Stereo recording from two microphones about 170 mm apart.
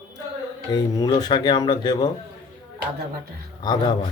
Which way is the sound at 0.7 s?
20° left (ahead or behind).